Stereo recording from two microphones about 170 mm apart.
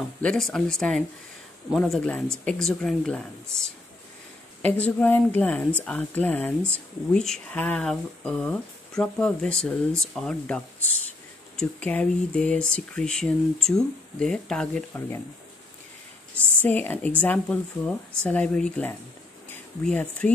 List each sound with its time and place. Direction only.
0.2 s speech: 5° left (ahead or behind)
16.6 s speech: 10° left (ahead or behind)